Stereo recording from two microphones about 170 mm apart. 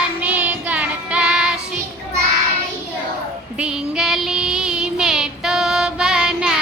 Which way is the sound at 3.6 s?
5° right (ahead or behind).